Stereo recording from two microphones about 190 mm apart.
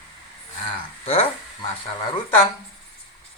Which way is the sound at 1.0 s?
30° left (ahead or behind).